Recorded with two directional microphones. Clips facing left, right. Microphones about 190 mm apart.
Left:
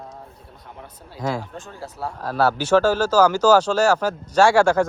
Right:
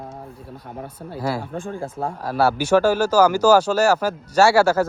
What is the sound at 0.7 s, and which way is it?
Speech, 50° right (ahead or behind).